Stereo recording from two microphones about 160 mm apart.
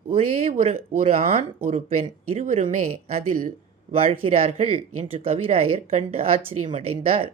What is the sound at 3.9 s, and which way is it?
Speech, 35° right (ahead or behind).